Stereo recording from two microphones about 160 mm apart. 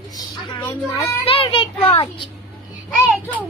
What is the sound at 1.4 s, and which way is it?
Speech, 35° left (ahead or behind).